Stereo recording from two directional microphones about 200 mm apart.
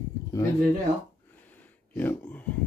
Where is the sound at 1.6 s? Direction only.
10° left (ahead or behind).